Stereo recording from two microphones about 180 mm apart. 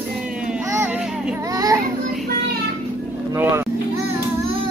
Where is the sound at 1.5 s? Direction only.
20° right (ahead or behind).